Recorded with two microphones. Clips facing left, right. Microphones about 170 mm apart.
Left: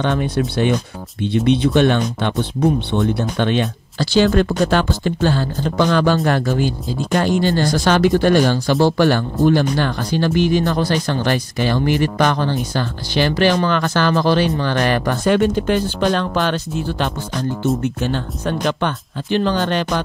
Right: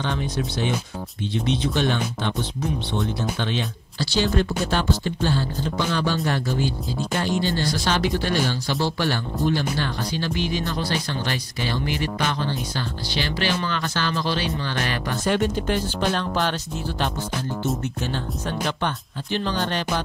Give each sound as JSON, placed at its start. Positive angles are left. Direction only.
{"t": 0.0, "sound": "speech", "side_deg": 60}
{"t": 5.4, "sound": "speech", "side_deg": 70}
{"t": 7.2, "sound": "speech", "side_deg": 50}
{"t": 18.0, "sound": "speech", "side_deg": 65}